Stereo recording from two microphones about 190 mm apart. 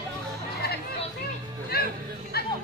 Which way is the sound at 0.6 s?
60° left (ahead or behind).